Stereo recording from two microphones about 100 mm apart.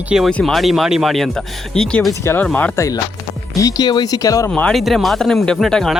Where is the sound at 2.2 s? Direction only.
25° left (ahead or behind).